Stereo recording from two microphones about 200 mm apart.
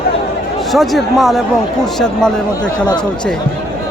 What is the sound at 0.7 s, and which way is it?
Speech, centre (ahead or behind).